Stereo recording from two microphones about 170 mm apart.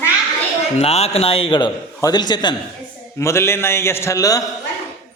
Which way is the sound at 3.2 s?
15° left (ahead or behind).